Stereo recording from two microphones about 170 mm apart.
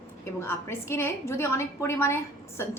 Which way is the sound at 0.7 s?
15° left (ahead or behind).